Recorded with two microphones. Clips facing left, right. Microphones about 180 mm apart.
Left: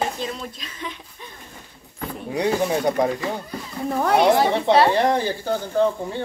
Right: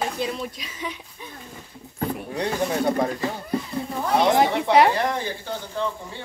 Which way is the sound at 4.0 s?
65° left (ahead or behind).